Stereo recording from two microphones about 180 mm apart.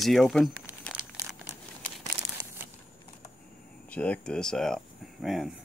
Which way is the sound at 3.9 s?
5° left (ahead or behind).